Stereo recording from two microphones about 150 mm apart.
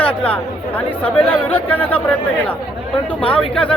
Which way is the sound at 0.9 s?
40° left (ahead or behind).